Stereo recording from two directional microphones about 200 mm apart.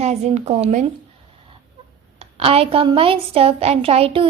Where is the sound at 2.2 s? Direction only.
30° right (ahead or behind).